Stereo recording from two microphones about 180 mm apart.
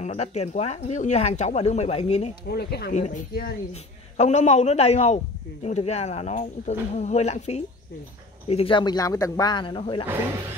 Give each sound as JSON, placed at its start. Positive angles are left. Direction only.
{"t": 0.0, "sound": "a man's voice", "side_deg": 40}
{"t": 2.5, "sound": "speech", "side_deg": 65}
{"t": 2.9, "sound": "a man's voice", "side_deg": 40}
{"t": 4.2, "sound": "a man's voice", "side_deg": 40}